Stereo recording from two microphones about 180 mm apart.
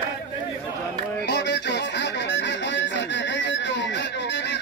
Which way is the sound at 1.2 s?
70° left (ahead or behind).